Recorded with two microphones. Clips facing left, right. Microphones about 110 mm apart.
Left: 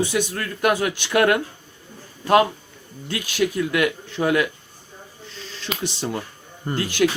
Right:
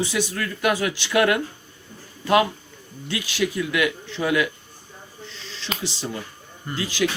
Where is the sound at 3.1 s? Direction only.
45° left (ahead or behind).